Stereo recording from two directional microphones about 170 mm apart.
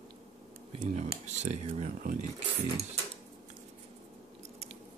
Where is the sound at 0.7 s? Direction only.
45° right (ahead or behind).